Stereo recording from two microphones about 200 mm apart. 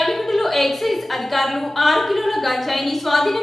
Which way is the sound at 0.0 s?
Centre (ahead or behind).